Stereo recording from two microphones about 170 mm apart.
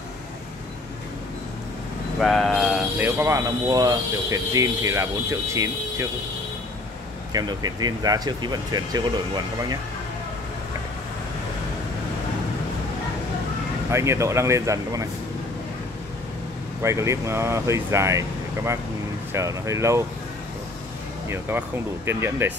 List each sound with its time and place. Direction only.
2.1 s speech: centre (ahead or behind)
3.0 s speech: 15° right (ahead or behind)
7.3 s speech: 25° right (ahead or behind)
13.8 s speech: 15° right (ahead or behind)
16.8 s speech: 15° right (ahead or behind)
21.3 s speech: 15° right (ahead or behind)